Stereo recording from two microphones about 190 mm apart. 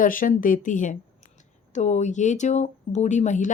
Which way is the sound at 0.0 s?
45° left (ahead or behind).